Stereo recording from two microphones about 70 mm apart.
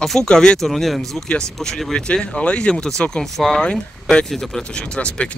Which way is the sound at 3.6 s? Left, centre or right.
Centre.